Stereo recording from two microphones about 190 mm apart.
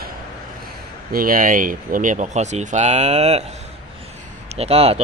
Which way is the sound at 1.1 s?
50° right (ahead or behind).